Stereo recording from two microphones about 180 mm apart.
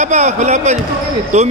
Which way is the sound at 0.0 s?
40° right (ahead or behind).